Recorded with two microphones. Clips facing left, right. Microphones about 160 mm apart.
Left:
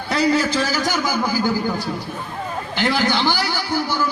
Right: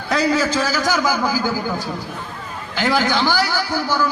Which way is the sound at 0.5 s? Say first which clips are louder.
Right 1 dB; 45° right (ahead or behind).